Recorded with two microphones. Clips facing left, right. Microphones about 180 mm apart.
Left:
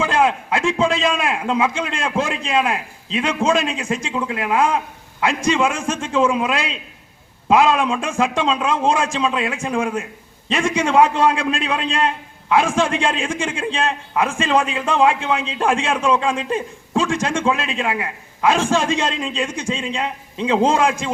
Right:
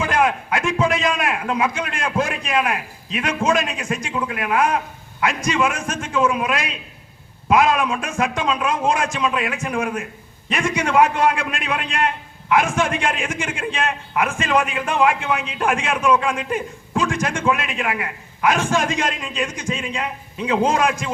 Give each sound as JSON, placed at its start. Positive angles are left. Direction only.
{"t": 0.0, "sound": "a man's voice", "side_deg": 25}